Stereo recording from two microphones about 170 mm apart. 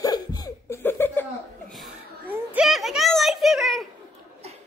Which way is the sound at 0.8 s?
10° left (ahead or behind).